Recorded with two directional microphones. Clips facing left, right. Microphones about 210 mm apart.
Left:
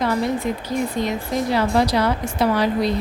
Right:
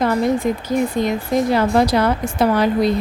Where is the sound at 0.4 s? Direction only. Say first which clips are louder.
Right 4 dB; 45° right (ahead or behind).